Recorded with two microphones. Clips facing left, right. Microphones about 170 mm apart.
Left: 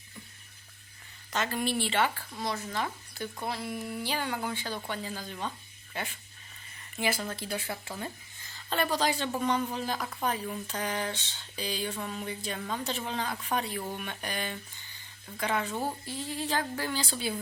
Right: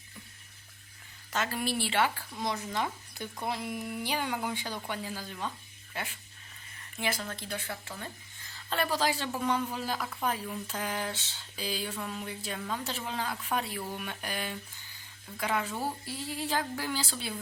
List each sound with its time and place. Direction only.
1.3 s a woman's voice: 5° right (ahead or behind)
2.4 s a woman's voice: 15° right (ahead or behind); by 8.1 s 10° left (ahead or behind)
8.4 s a woman's voice: centre (ahead or behind)